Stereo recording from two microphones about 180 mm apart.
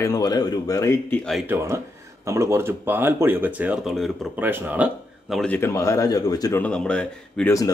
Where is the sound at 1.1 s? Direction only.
5° left (ahead or behind).